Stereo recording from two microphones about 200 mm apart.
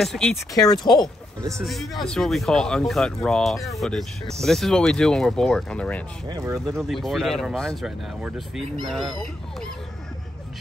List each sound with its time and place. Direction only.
0.0 s speech: centre (ahead or behind)
1.6 s speech: centre (ahead or behind)
6.2 s speech: 15° right (ahead or behind)
6.7 s speech: centre (ahead or behind)